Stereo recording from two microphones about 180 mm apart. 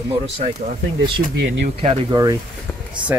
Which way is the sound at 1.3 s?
80° right.